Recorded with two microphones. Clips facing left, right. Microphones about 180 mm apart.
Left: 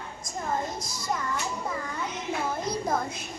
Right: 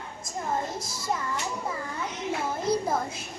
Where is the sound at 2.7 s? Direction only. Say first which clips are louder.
Right 5 dB; 30° right (ahead or behind).